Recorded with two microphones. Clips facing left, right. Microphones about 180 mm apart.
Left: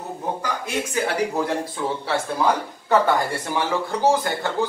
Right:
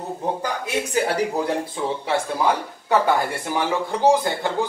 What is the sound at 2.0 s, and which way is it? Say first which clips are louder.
A man's voice: even; 10° right (ahead or behind).